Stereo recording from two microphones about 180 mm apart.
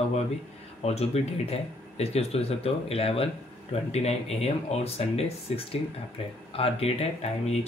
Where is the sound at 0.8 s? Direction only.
35° left (ahead or behind).